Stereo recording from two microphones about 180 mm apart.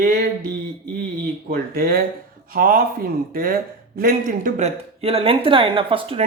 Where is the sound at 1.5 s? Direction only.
55° right (ahead or behind); by 6.2 s 30° right (ahead or behind).